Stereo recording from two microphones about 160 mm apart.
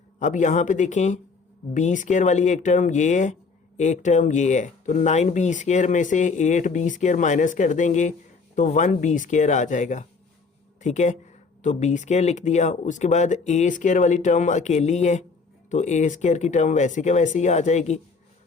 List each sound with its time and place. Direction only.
0.2 s speech: 50° left (ahead or behind)